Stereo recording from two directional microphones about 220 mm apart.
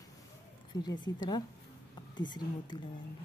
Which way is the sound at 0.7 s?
20° left (ahead or behind).